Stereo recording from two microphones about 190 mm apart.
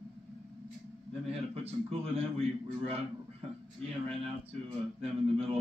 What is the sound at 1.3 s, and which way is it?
A man's voice, 30° right (ahead or behind).